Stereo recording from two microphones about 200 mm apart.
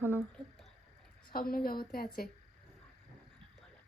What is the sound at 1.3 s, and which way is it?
Speech, 45° left (ahead or behind).